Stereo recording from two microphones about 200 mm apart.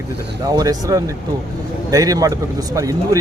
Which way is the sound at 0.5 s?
15° right (ahead or behind).